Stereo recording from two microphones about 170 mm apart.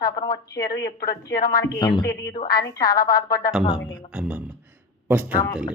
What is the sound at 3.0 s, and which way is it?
Speech, 55° left (ahead or behind).